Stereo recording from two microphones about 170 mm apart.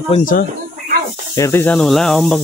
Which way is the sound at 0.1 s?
50° left (ahead or behind).